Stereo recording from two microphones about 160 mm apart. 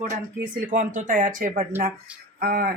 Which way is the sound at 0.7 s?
55° right (ahead or behind).